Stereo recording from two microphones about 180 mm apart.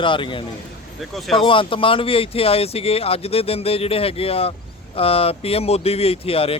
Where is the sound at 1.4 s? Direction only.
30° left (ahead or behind).